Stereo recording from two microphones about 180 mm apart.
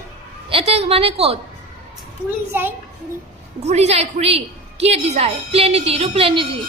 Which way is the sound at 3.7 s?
35° right (ahead or behind).